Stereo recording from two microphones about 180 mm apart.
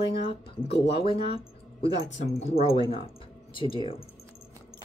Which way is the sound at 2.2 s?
35° left (ahead or behind).